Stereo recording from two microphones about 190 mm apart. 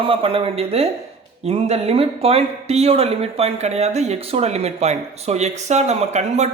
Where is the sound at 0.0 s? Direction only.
30° right (ahead or behind).